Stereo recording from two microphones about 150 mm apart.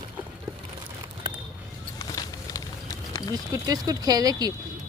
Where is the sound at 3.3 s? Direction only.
25° right (ahead or behind).